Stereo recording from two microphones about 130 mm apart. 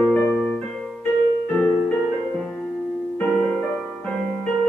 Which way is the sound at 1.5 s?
5° left (ahead or behind).